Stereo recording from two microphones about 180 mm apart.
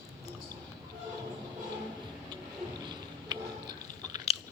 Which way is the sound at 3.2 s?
25° right (ahead or behind).